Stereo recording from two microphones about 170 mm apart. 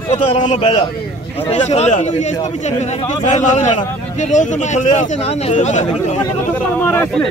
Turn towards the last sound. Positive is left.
turn(degrees=10)  # may be behind; listen again after turning